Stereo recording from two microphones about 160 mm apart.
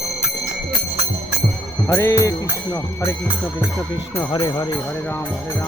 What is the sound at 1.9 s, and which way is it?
Speech, 20° left (ahead or behind).